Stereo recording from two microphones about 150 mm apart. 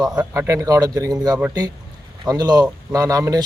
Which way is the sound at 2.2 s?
25° right (ahead or behind).